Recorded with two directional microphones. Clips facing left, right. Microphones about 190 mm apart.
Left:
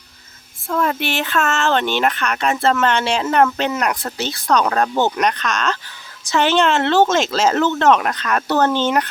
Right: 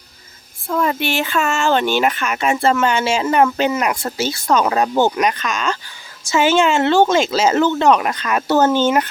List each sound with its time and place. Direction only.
0.7 s speech: centre (ahead or behind)